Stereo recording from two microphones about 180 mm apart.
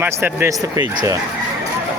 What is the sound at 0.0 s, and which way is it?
Speech, 15° right (ahead or behind).